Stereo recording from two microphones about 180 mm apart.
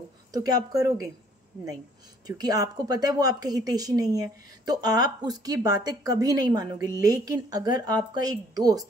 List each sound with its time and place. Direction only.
0.3 s speech: 20° right (ahead or behind)
2.2 s speech: 20° right (ahead or behind)